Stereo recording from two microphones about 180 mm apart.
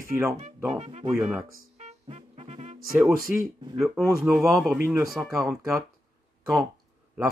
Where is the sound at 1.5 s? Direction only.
40° right (ahead or behind).